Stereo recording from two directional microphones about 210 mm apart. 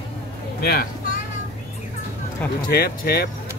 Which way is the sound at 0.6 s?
45° left (ahead or behind).